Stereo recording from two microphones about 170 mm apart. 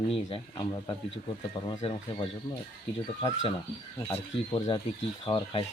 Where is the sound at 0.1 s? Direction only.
30° left (ahead or behind).